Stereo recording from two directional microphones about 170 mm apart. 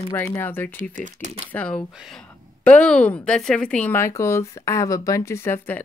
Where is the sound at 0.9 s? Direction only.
45° right (ahead or behind).